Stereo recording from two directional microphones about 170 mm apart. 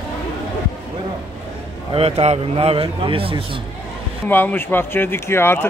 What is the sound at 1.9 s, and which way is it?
A man's voice, 35° right (ahead or behind).